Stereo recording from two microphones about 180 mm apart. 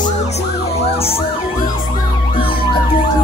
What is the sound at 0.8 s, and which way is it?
Emergency vehicle, 35° left (ahead or behind).